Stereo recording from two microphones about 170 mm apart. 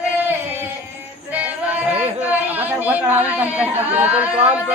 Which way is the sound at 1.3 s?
10° right (ahead or behind).